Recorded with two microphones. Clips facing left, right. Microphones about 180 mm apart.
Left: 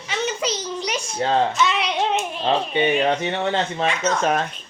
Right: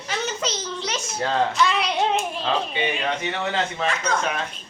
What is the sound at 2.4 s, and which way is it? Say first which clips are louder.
Speech: left 4 dB; 40° left (ahead or behind).